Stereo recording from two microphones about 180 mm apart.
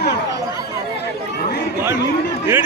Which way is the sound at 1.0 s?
65° left (ahead or behind).